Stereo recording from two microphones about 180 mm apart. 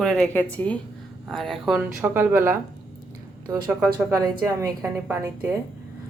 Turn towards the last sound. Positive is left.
turn(degrees=-15)  # may be behind; listen again after turning